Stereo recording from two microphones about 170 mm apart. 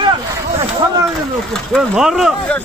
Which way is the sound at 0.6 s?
20° right (ahead or behind).